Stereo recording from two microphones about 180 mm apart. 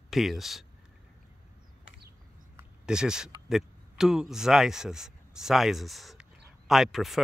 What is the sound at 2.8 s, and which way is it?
Speech, 5° right (ahead or behind).